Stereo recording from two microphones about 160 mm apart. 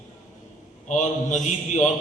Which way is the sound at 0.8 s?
50° left (ahead or behind).